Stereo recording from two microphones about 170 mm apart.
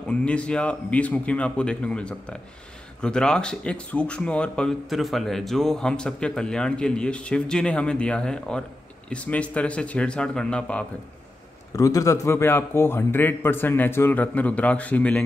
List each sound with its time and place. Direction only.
0.1 s a man's voice: 5° left (ahead or behind)
11.7 s a man's voice: 20° left (ahead or behind)